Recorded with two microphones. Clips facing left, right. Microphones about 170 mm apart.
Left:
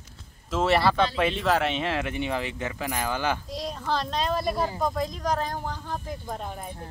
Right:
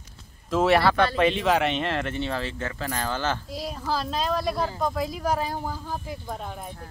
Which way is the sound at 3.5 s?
5° right (ahead or behind).